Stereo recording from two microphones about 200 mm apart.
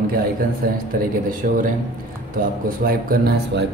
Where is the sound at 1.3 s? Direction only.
40° right (ahead or behind).